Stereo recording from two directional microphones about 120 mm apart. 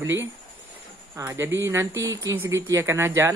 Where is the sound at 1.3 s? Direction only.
20° right (ahead or behind).